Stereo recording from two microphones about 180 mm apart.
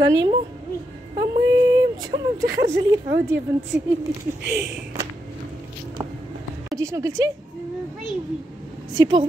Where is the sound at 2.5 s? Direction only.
85° right.